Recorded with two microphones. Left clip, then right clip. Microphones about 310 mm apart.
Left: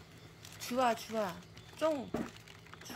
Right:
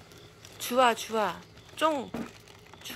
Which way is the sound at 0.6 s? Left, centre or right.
Centre.